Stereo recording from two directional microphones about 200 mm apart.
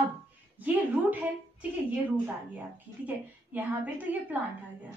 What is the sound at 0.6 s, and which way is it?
A woman's voice, 10° right (ahead or behind).